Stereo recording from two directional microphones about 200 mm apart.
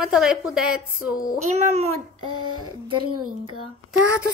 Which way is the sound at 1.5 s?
35° right (ahead or behind).